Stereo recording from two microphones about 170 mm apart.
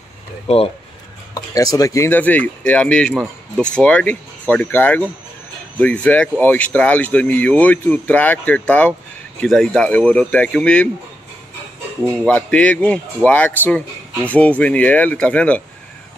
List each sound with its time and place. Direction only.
1.3 s speech: 20° left (ahead or behind); by 10.9 s 5° left (ahead or behind)
12.3 s speech: 5° left (ahead or behind)